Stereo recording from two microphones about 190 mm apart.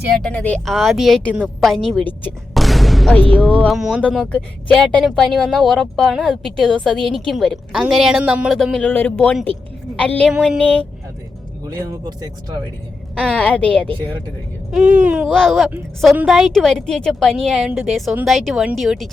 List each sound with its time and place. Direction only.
0.2 s speech: 5° left (ahead or behind)
11.6 s speech: 20° right (ahead or behind)
13.1 s a woman's voice: 5° left (ahead or behind)
14.7 s speech: 5° right (ahead or behind)